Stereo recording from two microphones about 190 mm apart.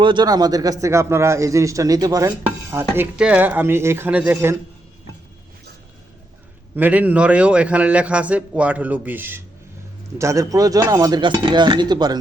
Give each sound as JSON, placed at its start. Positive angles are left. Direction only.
{"t": 0.0, "sound": "a man's voice", "side_deg": -25}
{"t": 6.7, "sound": "a man's voice", "side_deg": -10}